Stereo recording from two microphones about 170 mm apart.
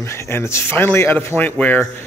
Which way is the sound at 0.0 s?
15° left (ahead or behind).